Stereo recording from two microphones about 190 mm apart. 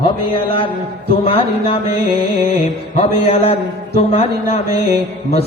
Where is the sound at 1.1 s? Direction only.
30° left (ahead or behind).